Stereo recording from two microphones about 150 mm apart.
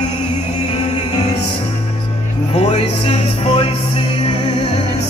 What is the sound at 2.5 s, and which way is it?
Music, 45° left (ahead or behind).